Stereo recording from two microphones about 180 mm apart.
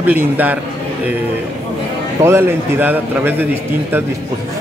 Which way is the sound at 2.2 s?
15° right (ahead or behind).